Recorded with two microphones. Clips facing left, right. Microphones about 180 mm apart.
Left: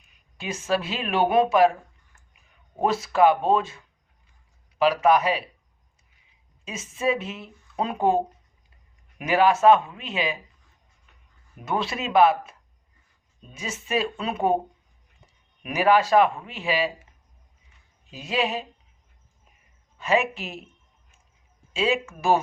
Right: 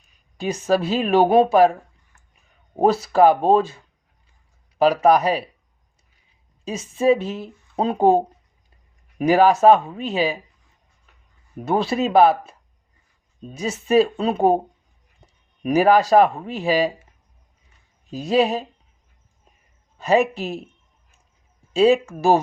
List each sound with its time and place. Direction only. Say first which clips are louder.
0.0 s speech: right 9 dB; 35° right (ahead or behind)
2.8 s speech: right 5 dB; 35° right (ahead or behind)
4.8 s speech: right 4 dB; 40° right (ahead or behind)
6.7 s speech: right 8 dB; 35° right (ahead or behind)
11.5 s speech: right 7 dB; 35° right (ahead or behind)
15.2 s a sound: right 4 dB; 35° right (ahead or behind)
15.6 s speech: right 5 dB; 40° right (ahead or behind)
18.1 s speech: right 8 dB; 40° right (ahead or behind)
20.0 s speech: right 5 dB; 35° right (ahead or behind)
21.7 s speech: right 9 dB; 40° right (ahead or behind)